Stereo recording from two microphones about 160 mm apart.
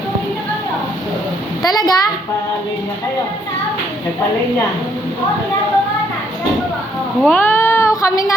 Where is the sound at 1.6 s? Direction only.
25° left (ahead or behind).